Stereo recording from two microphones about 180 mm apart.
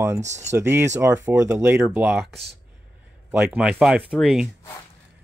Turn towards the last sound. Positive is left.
turn(degrees=0)  # may be behind; listen again after turning